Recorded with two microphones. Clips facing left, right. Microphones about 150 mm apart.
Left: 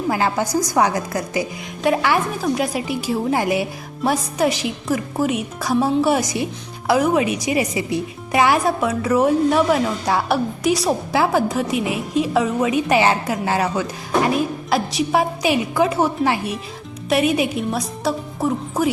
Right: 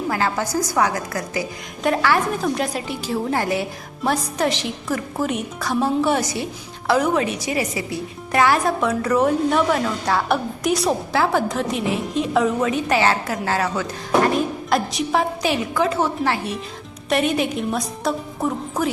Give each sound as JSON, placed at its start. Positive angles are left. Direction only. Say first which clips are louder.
{"t": 0.1, "sound": "a woman's voice", "louder": "left 4 dB", "side_deg": 20}
{"t": 2.4, "sound": "speech", "louder": "left 2 dB", "side_deg": 10}
{"t": 14.7, "sound": "a woman's voice", "louder": "left 2 dB", "side_deg": 5}